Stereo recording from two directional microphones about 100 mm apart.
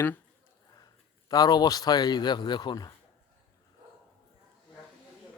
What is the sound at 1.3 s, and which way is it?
Speech, 40° left (ahead or behind).